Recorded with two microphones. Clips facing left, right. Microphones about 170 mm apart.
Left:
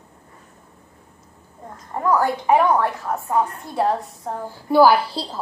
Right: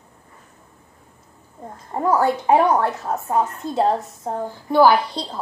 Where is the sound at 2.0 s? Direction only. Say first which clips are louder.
Right 1 dB; 25° right (ahead or behind).